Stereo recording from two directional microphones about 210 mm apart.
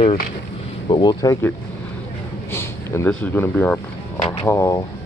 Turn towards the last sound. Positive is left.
turn(degrees=15)  # may be behind; listen again after turning